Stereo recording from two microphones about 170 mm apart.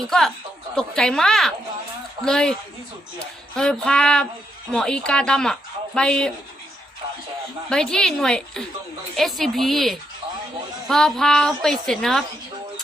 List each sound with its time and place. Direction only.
0.8 s speech: 5° left (ahead or behind)
7.7 s speech: 5° left (ahead or behind)